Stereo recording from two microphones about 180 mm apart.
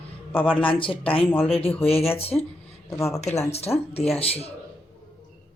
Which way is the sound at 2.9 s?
15° left (ahead or behind).